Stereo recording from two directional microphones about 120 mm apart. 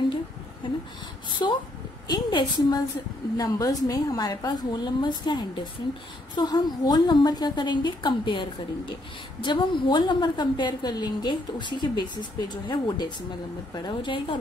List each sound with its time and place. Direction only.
1.4 s a woman's voice: 35° left (ahead or behind)